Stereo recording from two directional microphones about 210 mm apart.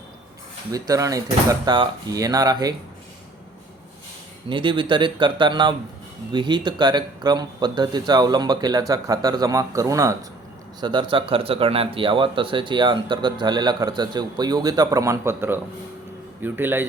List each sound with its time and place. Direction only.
0.7 s speech: 15° right (ahead or behind)
4.4 s speech: 25° right (ahead or behind)